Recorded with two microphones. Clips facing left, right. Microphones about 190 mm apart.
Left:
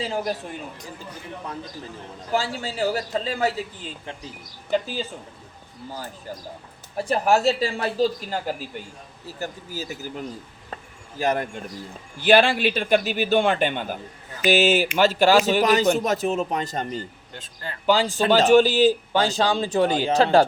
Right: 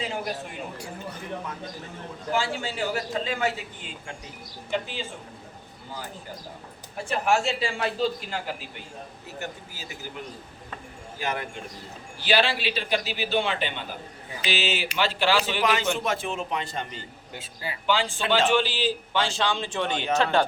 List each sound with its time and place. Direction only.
0.0 s a man's voice: 35° left (ahead or behind)
2.3 s a man's voice: 40° left (ahead or behind)
6.9 s a man's voice: 35° left (ahead or behind)
11.2 s a man's voice: 40° left (ahead or behind)
17.3 s a man's voice: 10° right (ahead or behind)
17.8 s a man's voice: 40° left (ahead or behind)